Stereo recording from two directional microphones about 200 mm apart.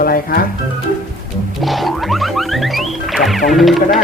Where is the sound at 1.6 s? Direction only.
Centre (ahead or behind).